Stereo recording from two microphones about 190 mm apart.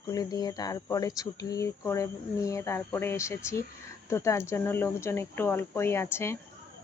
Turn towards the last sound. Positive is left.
turn(degrees=15)  # may be behind; listen again after turning